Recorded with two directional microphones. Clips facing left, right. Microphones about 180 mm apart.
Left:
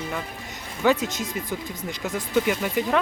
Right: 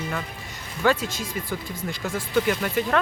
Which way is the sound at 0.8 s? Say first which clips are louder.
Left 1 dB; 20° left (ahead or behind).